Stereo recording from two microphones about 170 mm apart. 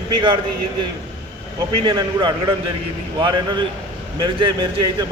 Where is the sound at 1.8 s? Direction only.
25° right (ahead or behind).